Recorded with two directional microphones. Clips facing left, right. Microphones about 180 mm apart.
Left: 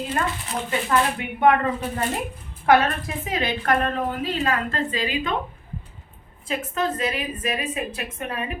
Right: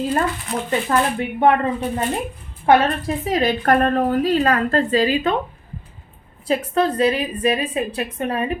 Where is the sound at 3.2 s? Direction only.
40° right (ahead or behind).